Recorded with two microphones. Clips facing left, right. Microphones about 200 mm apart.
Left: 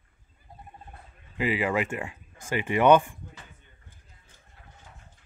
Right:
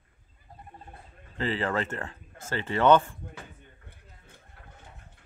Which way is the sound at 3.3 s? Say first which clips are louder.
Right 5 dB; 60° right (ahead or behind).